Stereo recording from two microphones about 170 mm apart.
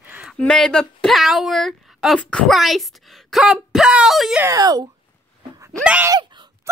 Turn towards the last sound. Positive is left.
turn(degrees=-25)  # may be behind; listen again after turning